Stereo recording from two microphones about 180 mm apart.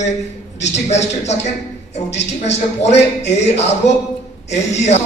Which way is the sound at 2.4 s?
35° left (ahead or behind).